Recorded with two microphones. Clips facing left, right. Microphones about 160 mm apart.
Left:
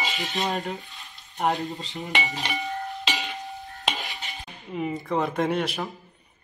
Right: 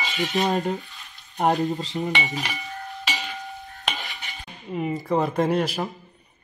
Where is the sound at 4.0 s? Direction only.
20° left (ahead or behind).